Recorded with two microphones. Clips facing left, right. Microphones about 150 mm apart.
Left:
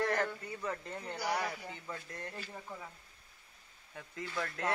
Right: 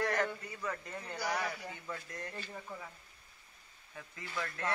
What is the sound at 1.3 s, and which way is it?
Speech, 30° left (ahead or behind).